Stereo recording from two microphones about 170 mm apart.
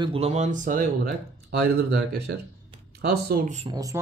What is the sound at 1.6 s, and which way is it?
Speech, 70° right (ahead or behind).